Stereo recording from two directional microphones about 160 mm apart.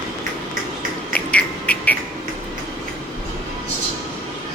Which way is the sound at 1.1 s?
10° left (ahead or behind).